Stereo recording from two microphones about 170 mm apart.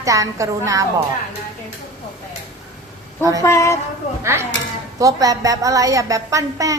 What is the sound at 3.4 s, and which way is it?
Speech, 15° left (ahead or behind).